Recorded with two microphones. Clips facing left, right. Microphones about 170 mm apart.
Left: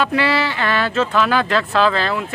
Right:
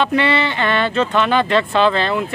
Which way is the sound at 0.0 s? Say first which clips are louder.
Right 1 dB; 5° left (ahead or behind).